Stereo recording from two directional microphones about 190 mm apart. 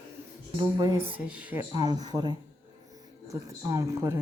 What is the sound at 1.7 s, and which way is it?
Speech, 20° right (ahead or behind).